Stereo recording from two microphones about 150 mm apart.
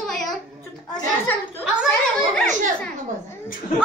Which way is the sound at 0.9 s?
15° left (ahead or behind).